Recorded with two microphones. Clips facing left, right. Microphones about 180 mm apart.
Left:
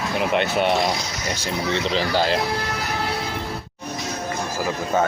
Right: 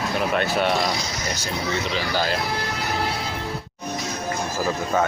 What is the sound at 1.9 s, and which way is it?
Speech, 25° left (ahead or behind).